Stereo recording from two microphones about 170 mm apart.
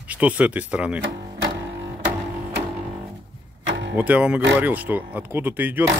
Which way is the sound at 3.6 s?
90° right.